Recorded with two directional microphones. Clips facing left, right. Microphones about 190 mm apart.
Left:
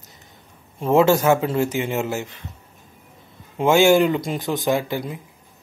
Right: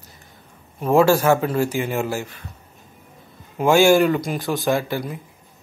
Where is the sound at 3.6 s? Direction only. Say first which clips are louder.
Even; 20° left (ahead or behind).